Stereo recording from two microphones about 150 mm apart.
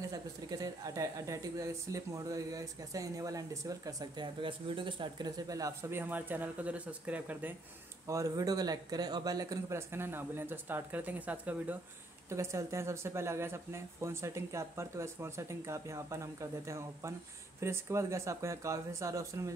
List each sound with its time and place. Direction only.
0.1 s a woman's voice: 25° right (ahead or behind)
8.1 s a woman's voice: 20° right (ahead or behind)